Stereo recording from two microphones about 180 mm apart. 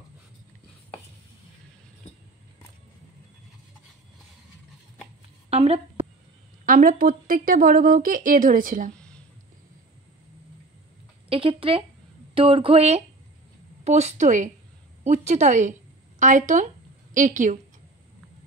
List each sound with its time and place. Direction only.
5.5 s a woman's voice: 35° right (ahead or behind)
6.6 s speech: 50° right (ahead or behind)
11.2 s speech: 30° right (ahead or behind)